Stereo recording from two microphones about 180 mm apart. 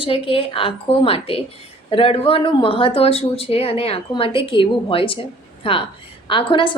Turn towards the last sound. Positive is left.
turn(degrees=30)  # may be behind; listen again after turning